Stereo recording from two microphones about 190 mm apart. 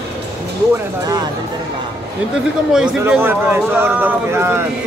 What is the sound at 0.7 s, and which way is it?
Speech, 20° right (ahead or behind).